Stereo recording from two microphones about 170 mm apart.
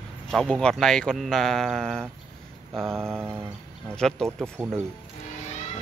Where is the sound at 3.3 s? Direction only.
15° right (ahead or behind).